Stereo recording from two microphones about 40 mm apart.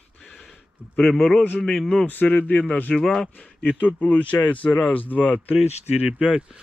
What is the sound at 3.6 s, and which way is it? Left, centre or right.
Speech, left.